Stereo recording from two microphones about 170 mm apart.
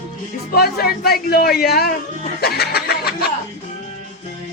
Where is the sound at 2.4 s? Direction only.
65° left (ahead or behind).